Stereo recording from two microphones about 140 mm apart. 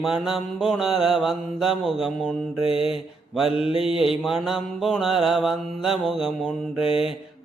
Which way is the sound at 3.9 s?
40° left (ahead or behind).